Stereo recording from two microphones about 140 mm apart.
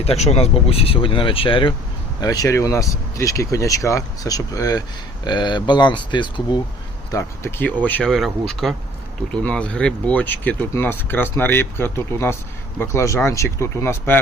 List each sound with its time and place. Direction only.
0.0 s speech: 45° left (ahead or behind)
2.2 s speech: 25° left (ahead or behind)
7.1 s speech: 20° left (ahead or behind)
7.9 s speech: 10° left (ahead or behind)